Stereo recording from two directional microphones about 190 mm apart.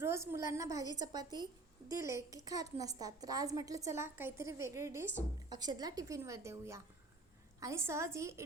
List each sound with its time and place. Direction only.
0.0 s a woman's voice: 15° right (ahead or behind)